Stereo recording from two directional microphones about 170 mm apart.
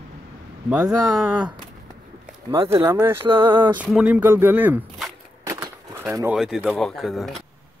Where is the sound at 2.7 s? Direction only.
15° right (ahead or behind).